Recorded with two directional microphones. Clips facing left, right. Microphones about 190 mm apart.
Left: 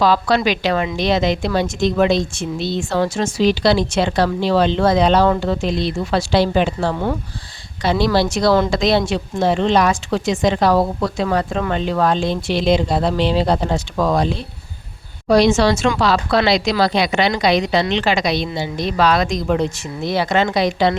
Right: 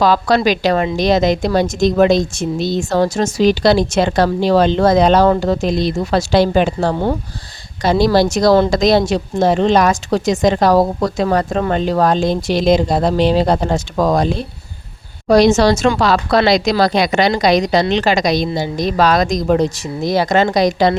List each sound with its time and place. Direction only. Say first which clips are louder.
0.0 s speech: right 2 dB; 45° right (ahead or behind)
6.9 s speech: right 3 dB; 30° right (ahead or behind)
7.8 s a woman's voice: right 4 dB; 40° right (ahead or behind)